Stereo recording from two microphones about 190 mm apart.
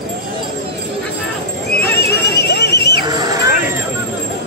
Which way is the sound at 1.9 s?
60° left (ahead or behind).